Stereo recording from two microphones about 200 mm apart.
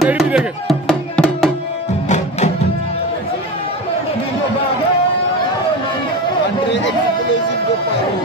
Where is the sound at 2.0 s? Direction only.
35° left (ahead or behind).